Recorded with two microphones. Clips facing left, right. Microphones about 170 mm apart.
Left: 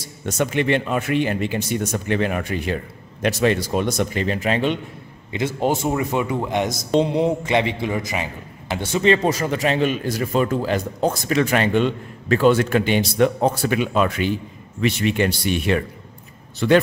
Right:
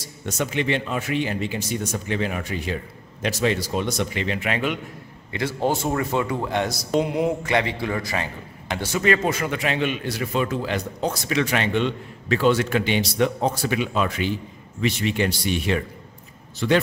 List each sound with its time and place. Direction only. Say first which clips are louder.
0.2 s speech: left 4 dB; 55° left (ahead or behind); by 4.7 s 30° left (ahead or behind)
5.3 s speech: left 2 dB; 20° left (ahead or behind); by 16.8 s 55° left (ahead or behind)